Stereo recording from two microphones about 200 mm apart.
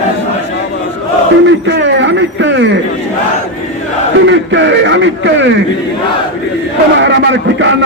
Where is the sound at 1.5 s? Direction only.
65° right (ahead or behind).